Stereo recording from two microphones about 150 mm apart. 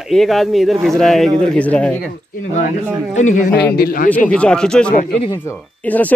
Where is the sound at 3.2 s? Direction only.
55° left (ahead or behind); by 4.1 s 80° left.